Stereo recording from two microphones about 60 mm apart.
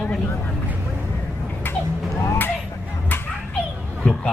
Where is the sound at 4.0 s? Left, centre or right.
Centre.